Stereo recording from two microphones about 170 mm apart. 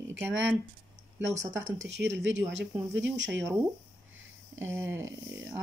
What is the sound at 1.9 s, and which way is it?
Speech, 90° right.